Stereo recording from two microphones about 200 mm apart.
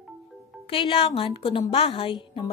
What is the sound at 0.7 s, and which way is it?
A woman's voice, 25° left (ahead or behind).